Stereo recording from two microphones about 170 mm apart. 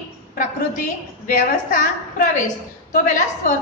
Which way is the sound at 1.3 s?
45° left (ahead or behind).